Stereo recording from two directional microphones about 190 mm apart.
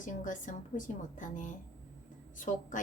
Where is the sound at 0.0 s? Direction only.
40° left (ahead or behind).